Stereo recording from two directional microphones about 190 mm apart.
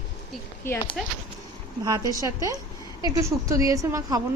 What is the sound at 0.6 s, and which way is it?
Speech, 10° left (ahead or behind).